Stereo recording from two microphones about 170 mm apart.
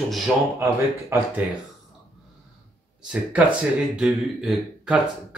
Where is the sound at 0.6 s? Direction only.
15° right (ahead or behind).